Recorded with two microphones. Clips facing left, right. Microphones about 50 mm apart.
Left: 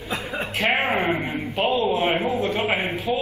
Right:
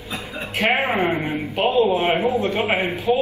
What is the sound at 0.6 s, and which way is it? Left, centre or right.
Speech, right.